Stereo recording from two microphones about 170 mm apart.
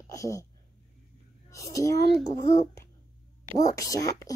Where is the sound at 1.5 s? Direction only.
20° left (ahead or behind).